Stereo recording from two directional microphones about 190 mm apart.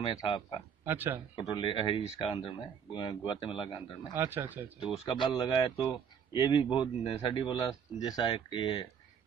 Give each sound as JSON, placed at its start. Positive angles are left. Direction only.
{"t": 0.0, "sound": "a man's voice", "side_deg": 20}
{"t": 0.8, "sound": "speech", "side_deg": -10}
{"t": 1.5, "sound": "a man's voice", "side_deg": 25}
{"t": 4.1, "sound": "speech", "side_deg": -10}
{"t": 4.7, "sound": "a man's voice", "side_deg": 25}